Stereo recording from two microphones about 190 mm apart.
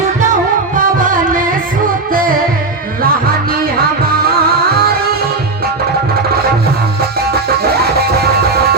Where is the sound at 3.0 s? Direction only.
50° right (ahead or behind).